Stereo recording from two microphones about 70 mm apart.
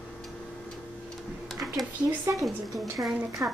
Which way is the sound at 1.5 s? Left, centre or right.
Centre.